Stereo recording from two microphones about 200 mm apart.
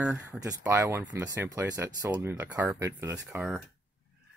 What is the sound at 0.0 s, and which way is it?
Speech, 5° right (ahead or behind).